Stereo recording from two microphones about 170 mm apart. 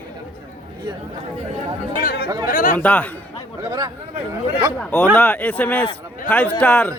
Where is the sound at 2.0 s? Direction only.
65° left (ahead or behind).